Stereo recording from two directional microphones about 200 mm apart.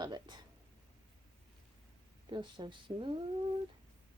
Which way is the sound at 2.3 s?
20° right (ahead or behind).